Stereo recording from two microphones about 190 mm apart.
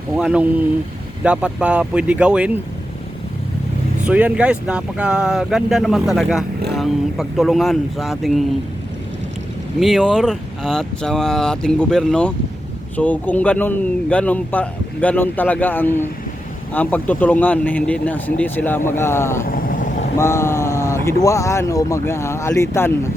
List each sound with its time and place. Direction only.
0.2 s speech: 5° right (ahead or behind)
4.0 s speech: 5° right (ahead or behind)
9.8 s speech: centre (ahead or behind)
19.5 s vehicle: 50° left (ahead or behind)
20.1 s speech: 15° left (ahead or behind)